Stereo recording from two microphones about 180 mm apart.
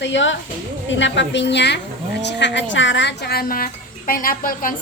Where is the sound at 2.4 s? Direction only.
85° left.